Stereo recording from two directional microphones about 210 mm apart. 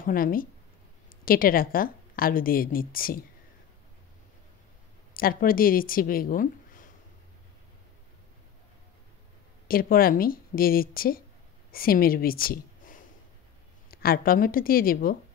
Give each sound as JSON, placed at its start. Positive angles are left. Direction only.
{"t": 0.0, "sound": "a woman's voice", "side_deg": 40}
{"t": 5.1, "sound": "speech", "side_deg": 45}
{"t": 9.7, "sound": "a woman's voice", "side_deg": 45}